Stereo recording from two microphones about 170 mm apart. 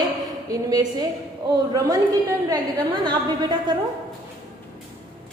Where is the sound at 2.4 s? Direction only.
25° right (ahead or behind).